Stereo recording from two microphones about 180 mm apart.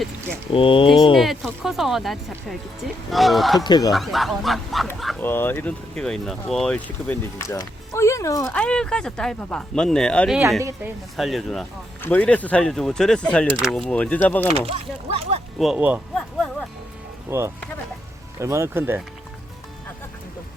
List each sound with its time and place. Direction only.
0.5 s speech: 30° left (ahead or behind)
1.1 s speech: centre (ahead or behind)
3.6 s speech: 20° left (ahead or behind)
3.9 s speech: centre (ahead or behind)
4.9 s dog: centre (ahead or behind)
5.2 s speech: 10° left (ahead or behind)
8.5 s speech: 5° left (ahead or behind)
10.6 s speech: 15° right (ahead or behind)
11.2 s speech: centre (ahead or behind)
14.7 s speech: 35° right (ahead or behind)
15.5 s speech: centre (ahead or behind)
16.1 s a sound: 5° left (ahead or behind)
17.2 s speech: 15° right (ahead or behind)